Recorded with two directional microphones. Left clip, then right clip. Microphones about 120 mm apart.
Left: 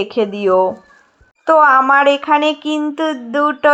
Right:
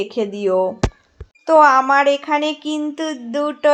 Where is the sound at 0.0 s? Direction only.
25° left (ahead or behind).